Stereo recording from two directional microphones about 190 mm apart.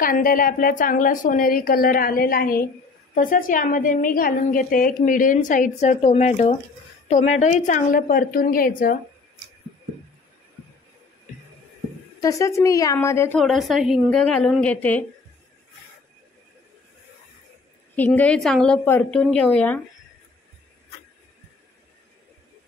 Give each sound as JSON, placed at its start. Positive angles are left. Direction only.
{"t": 0.0, "sound": "a woman's voice", "side_deg": 45}
{"t": 12.2, "sound": "a woman's voice", "side_deg": 15}
{"t": 13.4, "sound": "a woman's voice", "side_deg": 0}
{"t": 17.9, "sound": "a woman's voice", "side_deg": 10}